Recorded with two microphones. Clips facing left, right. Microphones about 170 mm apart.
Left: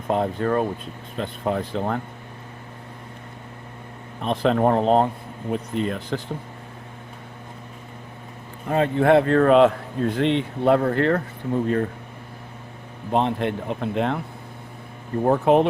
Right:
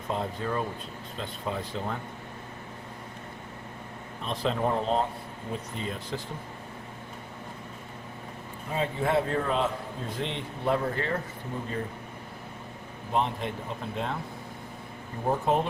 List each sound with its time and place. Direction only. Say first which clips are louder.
0.1 s speech: left 9 dB; 60° left (ahead or behind)
4.2 s speech: left 9 dB; 60° left (ahead or behind)
8.7 s a man's voice: left 10 dB; 65° left (ahead or behind)
13.1 s a man's voice: left 7 dB; 65° left (ahead or behind)
15.2 s a man's voice: left 9 dB; 65° left (ahead or behind)